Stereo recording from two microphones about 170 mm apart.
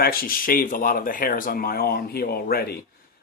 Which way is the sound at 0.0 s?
60° left (ahead or behind).